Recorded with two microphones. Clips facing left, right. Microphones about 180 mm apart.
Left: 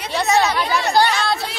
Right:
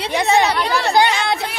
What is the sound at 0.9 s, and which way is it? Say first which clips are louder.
Speech: right 1 dB; 20° right (ahead or behind).